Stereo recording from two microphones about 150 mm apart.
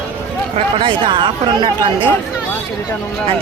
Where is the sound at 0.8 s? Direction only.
30° right (ahead or behind).